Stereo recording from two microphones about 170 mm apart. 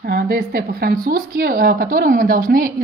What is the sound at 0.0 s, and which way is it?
Speech, 65° right (ahead or behind).